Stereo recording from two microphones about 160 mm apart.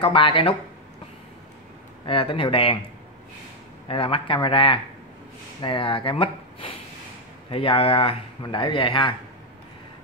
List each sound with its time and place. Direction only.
0.0 s speech: 35° left (ahead or behind)
2.0 s speech: 35° left (ahead or behind)
3.8 s speech: 35° left (ahead or behind)